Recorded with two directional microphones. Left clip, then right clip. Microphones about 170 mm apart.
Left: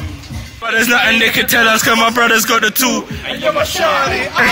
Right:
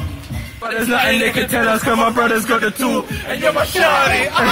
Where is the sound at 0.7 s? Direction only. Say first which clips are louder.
Left 5 dB; 15° left (ahead or behind).